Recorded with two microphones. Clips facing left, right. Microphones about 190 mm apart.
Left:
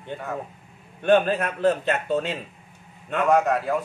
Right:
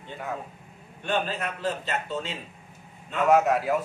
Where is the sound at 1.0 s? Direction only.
55° left (ahead or behind).